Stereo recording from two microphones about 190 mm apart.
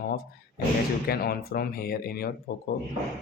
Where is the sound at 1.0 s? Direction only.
55° left (ahead or behind).